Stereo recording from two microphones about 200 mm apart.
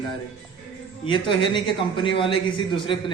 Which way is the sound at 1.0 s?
25° left (ahead or behind).